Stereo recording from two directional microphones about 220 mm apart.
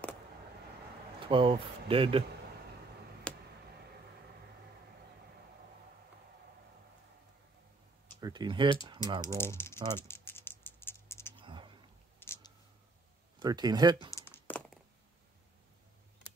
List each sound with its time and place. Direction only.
1.2 s speech: 25° right (ahead or behind)
3.3 s a sound: 5° left (ahead or behind)
8.2 s speech: 20° right (ahead or behind)
9.2 s speech: 10° left (ahead or behind)
9.9 s typing: 10° left (ahead or behind)
11.3 s a sound: 20° right (ahead or behind)
12.2 s clicking: 10° left (ahead or behind)
13.4 s speech: 20° right (ahead or behind)
14.1 s crumpling: 10° left (ahead or behind)